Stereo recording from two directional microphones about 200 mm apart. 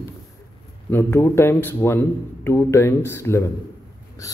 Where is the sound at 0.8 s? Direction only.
10° left (ahead or behind).